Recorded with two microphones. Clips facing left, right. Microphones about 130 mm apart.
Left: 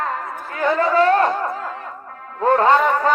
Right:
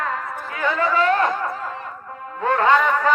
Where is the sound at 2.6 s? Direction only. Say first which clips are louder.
Even; 35° left (ahead or behind).